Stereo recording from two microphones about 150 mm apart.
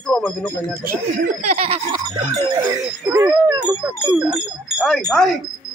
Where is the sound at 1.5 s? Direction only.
40° right (ahead or behind).